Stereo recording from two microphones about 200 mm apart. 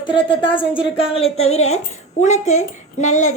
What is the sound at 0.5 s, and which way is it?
Speech, 5° right (ahead or behind).